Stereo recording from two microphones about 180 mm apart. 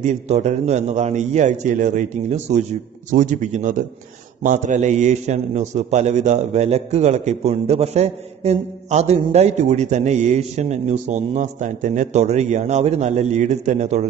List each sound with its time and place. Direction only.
0.0 s a man's voice: 40° right (ahead or behind)